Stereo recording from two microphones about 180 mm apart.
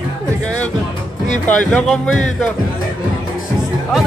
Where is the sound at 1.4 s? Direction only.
10° left (ahead or behind).